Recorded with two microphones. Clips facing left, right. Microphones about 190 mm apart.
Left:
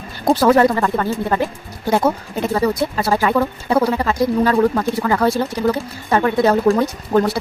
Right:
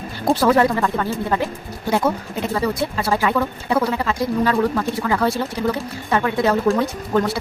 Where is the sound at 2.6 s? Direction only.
40° left (ahead or behind).